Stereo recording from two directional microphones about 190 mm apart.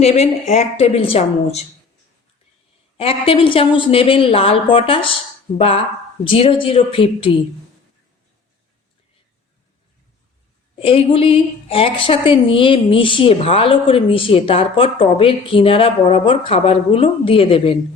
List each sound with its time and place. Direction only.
0.0 s a woman's voice: 35° left (ahead or behind)
3.0 s a woman's voice: 30° left (ahead or behind)
10.8 s a woman's voice: 30° left (ahead or behind)